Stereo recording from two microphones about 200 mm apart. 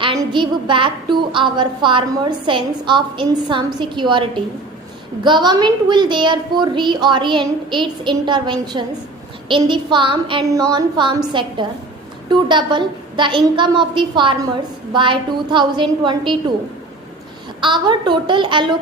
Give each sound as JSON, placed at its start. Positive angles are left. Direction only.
{"t": 0.0, "sound": "a woman's voice", "side_deg": -25}
{"t": 17.6, "sound": "a woman's voice", "side_deg": -25}